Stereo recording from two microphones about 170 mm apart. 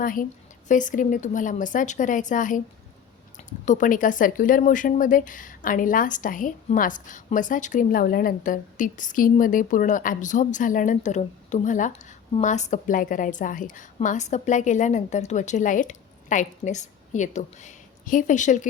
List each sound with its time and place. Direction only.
0.0 s speech: 55° left (ahead or behind)